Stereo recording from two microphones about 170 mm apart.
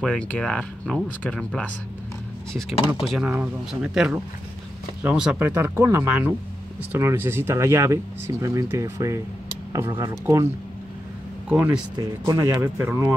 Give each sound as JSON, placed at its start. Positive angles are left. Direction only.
{"t": 0.0, "sound": "speech", "side_deg": 5}
{"t": 3.3, "sound": "speech", "side_deg": -10}